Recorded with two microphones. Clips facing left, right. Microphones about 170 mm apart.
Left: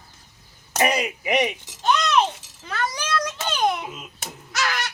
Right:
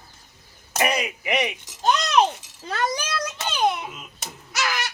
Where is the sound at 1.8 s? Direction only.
40° right (ahead or behind).